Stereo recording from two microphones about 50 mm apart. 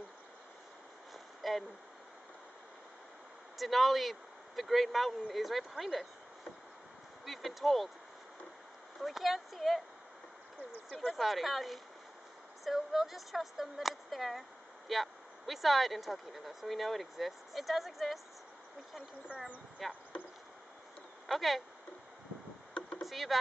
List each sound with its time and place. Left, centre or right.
1.1 s a sound: centre
3.5 s speech: centre
7.2 s speech: centre
9.0 s speech: centre
10.9 s speech: centre
19.8 s speech: centre
21.3 s speech: centre
22.8 s a sound: left
23.0 s speech: centre